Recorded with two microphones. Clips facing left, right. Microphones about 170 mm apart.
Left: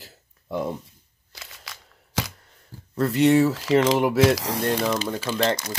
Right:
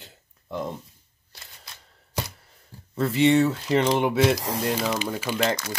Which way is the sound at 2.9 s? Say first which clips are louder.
Left 1 dB; centre (ahead or behind).